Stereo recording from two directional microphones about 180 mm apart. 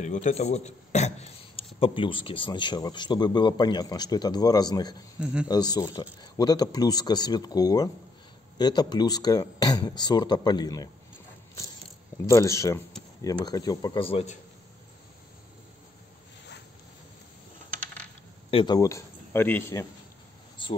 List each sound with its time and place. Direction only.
0.0 s a man's voice: 45° left (ahead or behind); by 4.9 s 20° left (ahead or behind)
5.2 s a man's voice: 5° right (ahead or behind)
5.5 s speech: 20° left (ahead or behind)
12.3 s speech: 15° left (ahead or behind); by 14.4 s 35° left (ahead or behind)
18.5 s speech: 25° left (ahead or behind)